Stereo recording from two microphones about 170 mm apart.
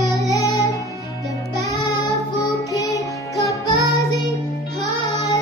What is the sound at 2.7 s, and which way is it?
Music, 20° left (ahead or behind).